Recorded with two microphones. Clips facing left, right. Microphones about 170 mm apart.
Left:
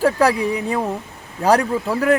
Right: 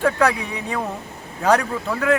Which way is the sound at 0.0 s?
35° left (ahead or behind).